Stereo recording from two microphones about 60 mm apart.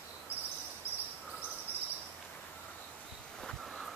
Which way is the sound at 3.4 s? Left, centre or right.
Centre.